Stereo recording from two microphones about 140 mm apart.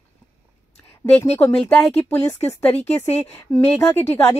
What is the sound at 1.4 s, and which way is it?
A woman's voice, 10° left (ahead or behind).